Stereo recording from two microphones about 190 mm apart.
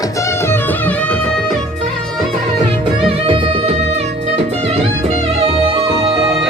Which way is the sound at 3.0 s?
30° right (ahead or behind).